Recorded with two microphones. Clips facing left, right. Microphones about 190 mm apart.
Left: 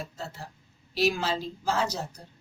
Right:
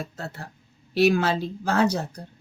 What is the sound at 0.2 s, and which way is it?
Speech, 60° right (ahead or behind).